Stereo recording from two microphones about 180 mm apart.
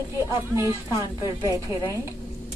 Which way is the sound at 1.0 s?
25° left (ahead or behind).